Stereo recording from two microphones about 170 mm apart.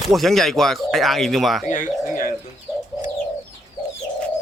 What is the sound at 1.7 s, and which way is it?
Bird, 50° left (ahead or behind).